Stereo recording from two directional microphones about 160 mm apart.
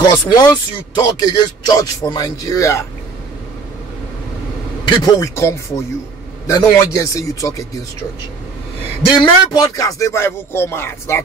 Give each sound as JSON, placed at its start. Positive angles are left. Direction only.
{"t": 0.0, "sound": "a man's voice", "side_deg": 25}
{"t": 4.8, "sound": "a man's voice", "side_deg": 25}
{"t": 9.2, "sound": "speech", "side_deg": 25}